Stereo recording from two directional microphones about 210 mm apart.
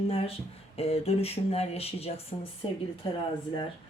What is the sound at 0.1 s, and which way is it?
Speech, 25° left (ahead or behind).